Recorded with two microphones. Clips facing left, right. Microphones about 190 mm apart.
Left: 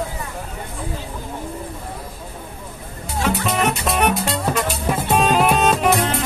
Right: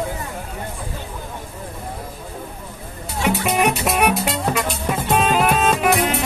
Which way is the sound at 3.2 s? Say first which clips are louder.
Right 2 dB; 10° right (ahead or behind).